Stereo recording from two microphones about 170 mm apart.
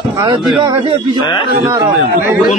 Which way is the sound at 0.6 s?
25° right (ahead or behind).